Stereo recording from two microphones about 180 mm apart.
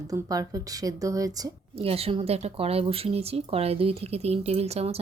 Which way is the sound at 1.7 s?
35° right (ahead or behind).